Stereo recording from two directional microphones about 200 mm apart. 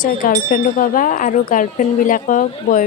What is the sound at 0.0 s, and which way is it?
Speech, 40° left (ahead or behind).